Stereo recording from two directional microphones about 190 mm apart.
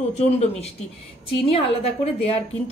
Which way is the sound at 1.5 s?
30° left (ahead or behind).